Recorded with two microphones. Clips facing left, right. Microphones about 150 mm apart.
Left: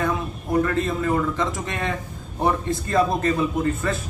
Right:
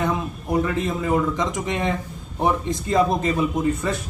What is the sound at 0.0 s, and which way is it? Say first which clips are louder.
A man's voice: right 1 dB; 15° right (ahead or behind).